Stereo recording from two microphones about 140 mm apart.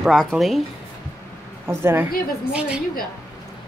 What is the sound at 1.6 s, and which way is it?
Speech, 15° right (ahead or behind).